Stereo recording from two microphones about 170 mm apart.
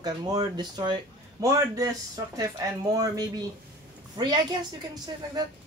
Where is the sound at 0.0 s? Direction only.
25° right (ahead or behind).